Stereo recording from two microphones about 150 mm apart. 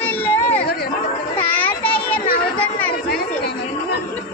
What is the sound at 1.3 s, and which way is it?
Children playing, 10° left (ahead or behind).